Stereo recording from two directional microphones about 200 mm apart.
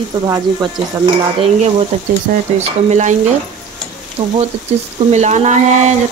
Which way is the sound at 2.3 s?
40° right (ahead or behind).